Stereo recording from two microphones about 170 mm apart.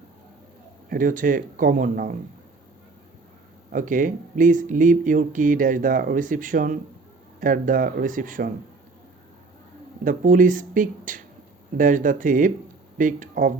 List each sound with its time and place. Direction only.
0.9 s speech: 55° right (ahead or behind)
3.7 s speech: 55° right (ahead or behind)
10.0 s speech: 50° right (ahead or behind)